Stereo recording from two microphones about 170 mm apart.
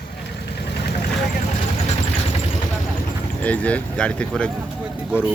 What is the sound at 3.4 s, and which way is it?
Speech, 10° left (ahead or behind).